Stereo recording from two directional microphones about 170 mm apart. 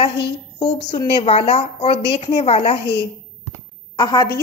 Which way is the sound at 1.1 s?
40° left (ahead or behind).